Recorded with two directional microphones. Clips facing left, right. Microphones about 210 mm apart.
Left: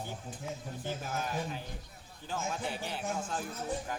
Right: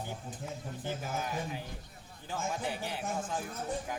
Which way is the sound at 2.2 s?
15° right (ahead or behind).